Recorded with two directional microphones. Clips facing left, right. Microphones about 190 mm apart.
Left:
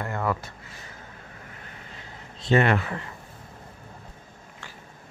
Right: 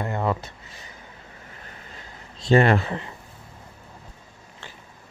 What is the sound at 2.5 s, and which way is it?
Speech, 35° right (ahead or behind).